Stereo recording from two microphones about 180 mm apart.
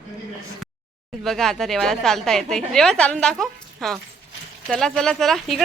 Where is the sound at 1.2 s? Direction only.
Centre (ahead or behind).